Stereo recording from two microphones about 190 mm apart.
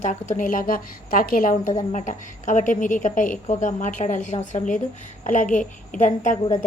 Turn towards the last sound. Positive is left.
turn(degrees=40)  # may be behind; listen again after turning